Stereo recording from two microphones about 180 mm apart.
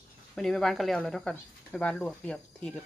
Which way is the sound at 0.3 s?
Centre (ahead or behind).